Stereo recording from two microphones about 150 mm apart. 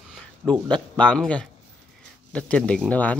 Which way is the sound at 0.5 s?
10° left (ahead or behind).